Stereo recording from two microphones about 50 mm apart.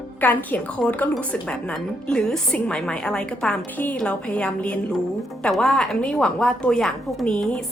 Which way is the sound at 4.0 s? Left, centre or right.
Left.